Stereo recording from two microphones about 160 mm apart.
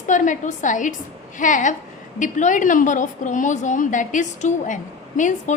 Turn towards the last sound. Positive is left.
turn(degrees=50)  # may be behind; listen again after turning